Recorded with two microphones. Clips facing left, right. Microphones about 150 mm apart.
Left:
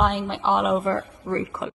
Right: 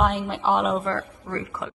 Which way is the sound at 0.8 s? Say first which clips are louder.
Left 4 dB; 20° left (ahead or behind).